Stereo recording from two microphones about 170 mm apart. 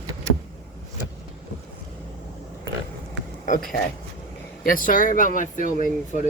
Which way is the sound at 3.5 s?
50° left (ahead or behind).